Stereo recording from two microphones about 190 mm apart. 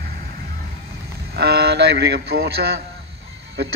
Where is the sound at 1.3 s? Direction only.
55° right (ahead or behind).